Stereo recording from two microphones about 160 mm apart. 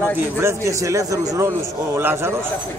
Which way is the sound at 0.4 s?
20° right (ahead or behind).